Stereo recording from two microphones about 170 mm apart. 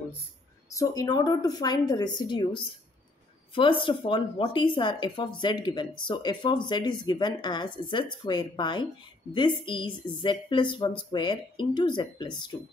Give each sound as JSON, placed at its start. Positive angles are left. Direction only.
{"t": 0.7, "sound": "speech", "side_deg": 20}